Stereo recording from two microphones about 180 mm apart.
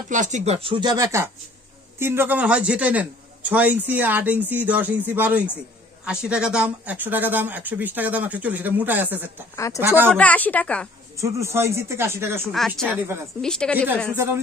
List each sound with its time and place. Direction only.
0.1 s a man's voice: 40° right (ahead or behind); by 10.1 s 10° right (ahead or behind)
10.1 s speech: 10° left (ahead or behind)
11.1 s a man's voice: 15° right (ahead or behind)
12.5 s a woman's voice: 5° left (ahead or behind)